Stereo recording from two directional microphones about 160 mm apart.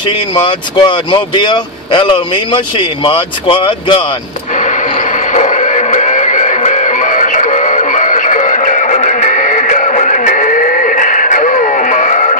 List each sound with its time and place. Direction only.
0.3 s speech: 30° left (ahead or behind)
4.6 s music: 50° left (ahead or behind)